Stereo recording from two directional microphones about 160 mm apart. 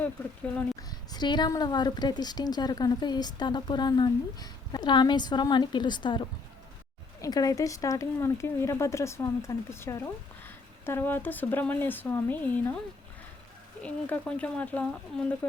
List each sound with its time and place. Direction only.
0.8 s a woman's voice: 25° left (ahead or behind)
13.8 s speech: 10° left (ahead or behind)